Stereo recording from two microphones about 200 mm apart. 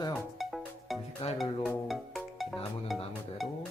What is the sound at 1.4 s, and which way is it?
Speech, 5° left (ahead or behind).